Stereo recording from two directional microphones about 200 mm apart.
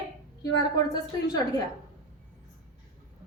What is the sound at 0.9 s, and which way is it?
Speech, 20° left (ahead or behind).